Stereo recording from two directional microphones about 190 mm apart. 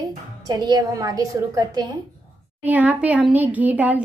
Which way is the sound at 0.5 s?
20° right (ahead or behind).